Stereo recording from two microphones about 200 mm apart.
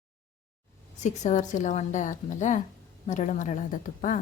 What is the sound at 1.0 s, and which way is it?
A woman's voice, 35° left (ahead or behind).